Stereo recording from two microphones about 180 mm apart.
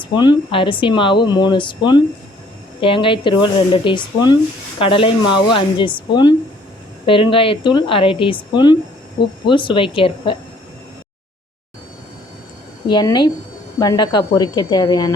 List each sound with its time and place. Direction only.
0.0 s speech: 25° left (ahead or behind)
12.9 s speech: 25° left (ahead or behind)